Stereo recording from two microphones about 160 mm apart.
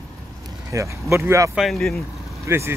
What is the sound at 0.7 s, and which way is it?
Speech, 20° right (ahead or behind).